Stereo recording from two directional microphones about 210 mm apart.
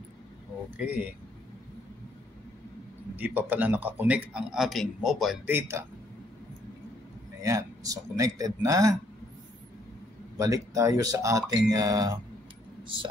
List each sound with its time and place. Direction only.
0.7 s speech: 5° right (ahead or behind)
3.2 s a man's voice: 10° right (ahead or behind)
5.6 s a man's voice: 15° right (ahead or behind)
7.4 s a man's voice: 15° right (ahead or behind)
10.3 s a man's voice: 15° right (ahead or behind)